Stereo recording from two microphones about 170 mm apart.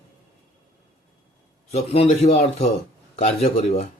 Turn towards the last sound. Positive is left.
turn(degrees=35)  # may be behind; listen again after turning